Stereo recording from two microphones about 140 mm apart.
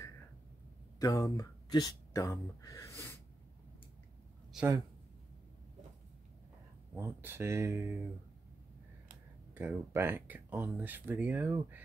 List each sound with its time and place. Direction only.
0.9 s speech: 25° left (ahead or behind)
4.5 s speech: 5° right (ahead or behind)
7.0 s speech: 15° right (ahead or behind)
9.5 s speech: 15° right (ahead or behind)